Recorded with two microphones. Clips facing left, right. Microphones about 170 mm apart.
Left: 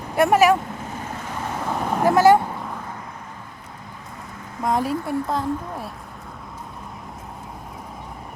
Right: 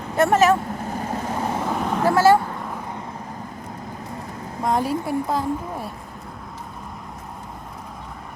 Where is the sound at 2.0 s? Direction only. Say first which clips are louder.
Left 1 dB; 15° left (ahead or behind).